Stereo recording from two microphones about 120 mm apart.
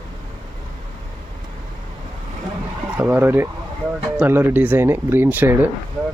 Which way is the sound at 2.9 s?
15° right (ahead or behind).